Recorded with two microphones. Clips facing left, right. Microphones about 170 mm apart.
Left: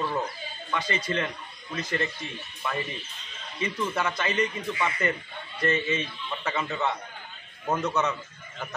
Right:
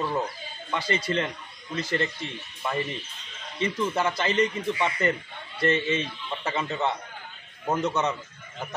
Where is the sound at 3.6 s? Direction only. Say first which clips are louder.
Right 3 dB; 30° right (ahead or behind).